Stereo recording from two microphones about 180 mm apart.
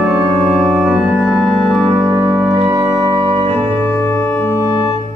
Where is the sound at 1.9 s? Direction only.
15° right (ahead or behind).